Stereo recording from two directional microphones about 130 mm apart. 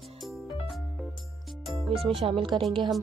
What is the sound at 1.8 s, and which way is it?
Speech, 5° left (ahead or behind).